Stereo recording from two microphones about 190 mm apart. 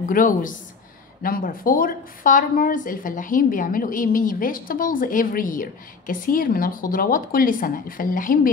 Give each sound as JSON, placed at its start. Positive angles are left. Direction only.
{"t": 0.1, "sound": "a woman's voice", "side_deg": 45}